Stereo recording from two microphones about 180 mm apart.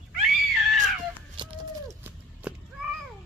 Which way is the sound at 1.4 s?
30° right (ahead or behind).